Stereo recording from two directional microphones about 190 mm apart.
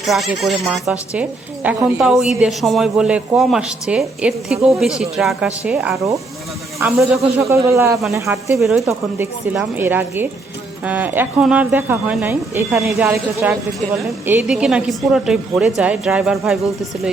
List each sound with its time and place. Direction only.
0.0 s speech: centre (ahead or behind); by 8.5 s 15° right (ahead or behind)
8.5 s speech: centre (ahead or behind)
8.8 s speech: 15° right (ahead or behind)